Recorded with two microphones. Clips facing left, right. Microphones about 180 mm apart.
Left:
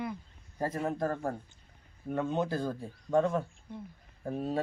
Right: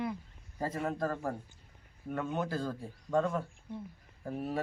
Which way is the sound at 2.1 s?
20° left (ahead or behind).